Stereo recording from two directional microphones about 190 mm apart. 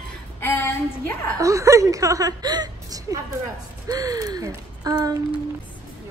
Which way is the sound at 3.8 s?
20° right (ahead or behind).